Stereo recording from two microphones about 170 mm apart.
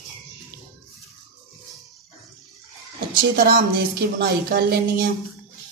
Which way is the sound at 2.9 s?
65° right (ahead or behind).